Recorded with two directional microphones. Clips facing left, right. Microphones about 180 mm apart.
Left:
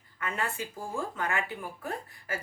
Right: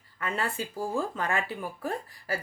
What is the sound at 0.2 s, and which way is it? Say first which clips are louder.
A woman's voice: right 2 dB; 30° right (ahead or behind).